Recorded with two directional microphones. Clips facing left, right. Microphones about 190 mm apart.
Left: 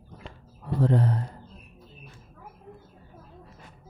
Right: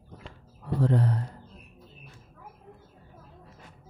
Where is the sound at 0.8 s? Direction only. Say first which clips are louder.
Left 2 dB; 25° left (ahead or behind).